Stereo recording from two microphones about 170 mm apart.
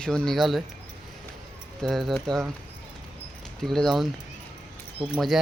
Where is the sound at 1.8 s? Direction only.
Centre (ahead or behind).